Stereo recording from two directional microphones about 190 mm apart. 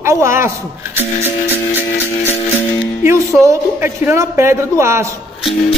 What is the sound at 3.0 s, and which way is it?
A man's voice, 15° right (ahead or behind).